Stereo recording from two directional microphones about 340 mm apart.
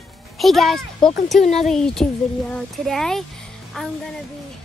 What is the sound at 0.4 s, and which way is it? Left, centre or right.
A child's voice, centre.